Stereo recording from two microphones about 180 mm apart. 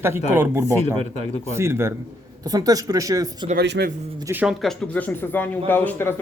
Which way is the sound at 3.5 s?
65° right (ahead or behind).